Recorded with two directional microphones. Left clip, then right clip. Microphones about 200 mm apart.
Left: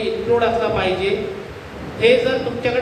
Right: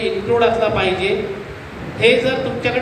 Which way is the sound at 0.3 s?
55° right (ahead or behind).